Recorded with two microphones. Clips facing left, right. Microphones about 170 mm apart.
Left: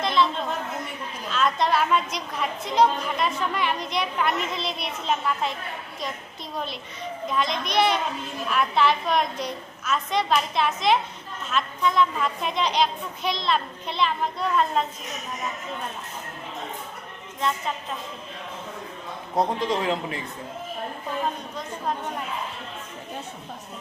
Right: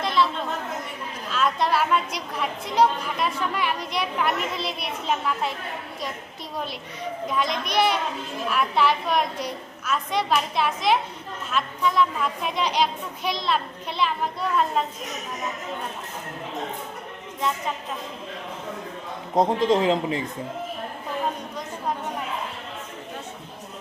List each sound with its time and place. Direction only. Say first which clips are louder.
0.0 s chatter: even; 5° right (ahead or behind)
1.3 s a woman's voice: even; 5° right (ahead or behind)
7.3 s a woman's voice: even; 10° right (ahead or behind)
19.4 s a man's voice: right 4 dB; 20° right (ahead or behind)